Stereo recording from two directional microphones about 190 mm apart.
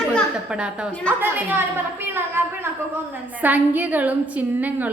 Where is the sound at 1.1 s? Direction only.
10° right (ahead or behind).